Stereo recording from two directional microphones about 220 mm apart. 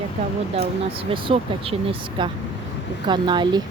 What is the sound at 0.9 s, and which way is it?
Speech, 25° right (ahead or behind).